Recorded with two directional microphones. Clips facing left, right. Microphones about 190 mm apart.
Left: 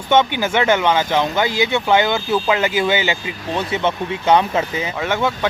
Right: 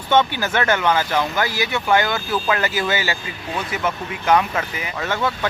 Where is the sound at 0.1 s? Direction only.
20° left (ahead or behind).